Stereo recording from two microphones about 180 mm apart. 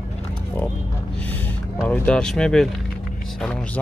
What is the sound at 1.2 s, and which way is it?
Music, 10° left (ahead or behind).